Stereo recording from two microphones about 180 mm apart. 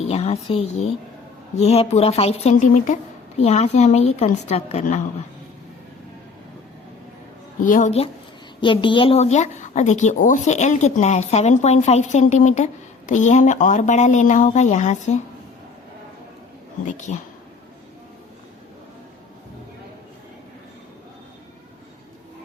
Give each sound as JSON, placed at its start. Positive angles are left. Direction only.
{"t": 0.0, "sound": "speech", "side_deg": 35}
{"t": 7.6, "sound": "speech", "side_deg": 45}
{"t": 8.6, "sound": "speech", "side_deg": 25}
{"t": 16.8, "sound": "speech", "side_deg": 45}